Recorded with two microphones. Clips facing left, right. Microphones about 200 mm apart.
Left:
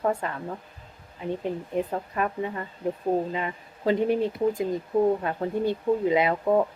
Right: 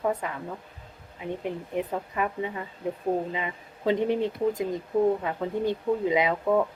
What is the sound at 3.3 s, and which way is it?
Speech, 15° right (ahead or behind).